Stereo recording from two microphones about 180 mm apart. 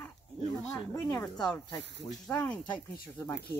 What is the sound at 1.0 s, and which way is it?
Speech, 20° left (ahead or behind).